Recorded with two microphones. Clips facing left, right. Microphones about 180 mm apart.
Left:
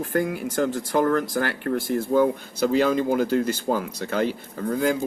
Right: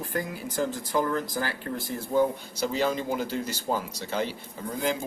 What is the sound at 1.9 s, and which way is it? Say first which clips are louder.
Speech: left 4 dB; 50° left (ahead or behind).